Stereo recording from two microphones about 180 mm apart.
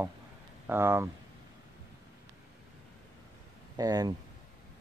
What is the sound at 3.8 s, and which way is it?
Speech, 20° right (ahead or behind).